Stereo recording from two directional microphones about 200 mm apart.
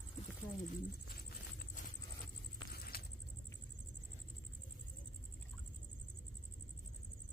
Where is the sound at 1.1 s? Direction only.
45° left (ahead or behind).